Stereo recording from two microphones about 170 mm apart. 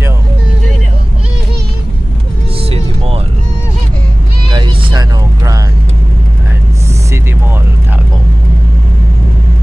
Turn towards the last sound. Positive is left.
turn(degrees=-15)  # may be behind; listen again after turning